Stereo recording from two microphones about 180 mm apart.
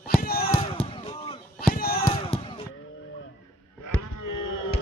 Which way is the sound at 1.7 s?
55° left (ahead or behind).